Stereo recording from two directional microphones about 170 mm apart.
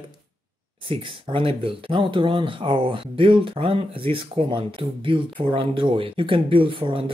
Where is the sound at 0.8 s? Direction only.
30° right (ahead or behind).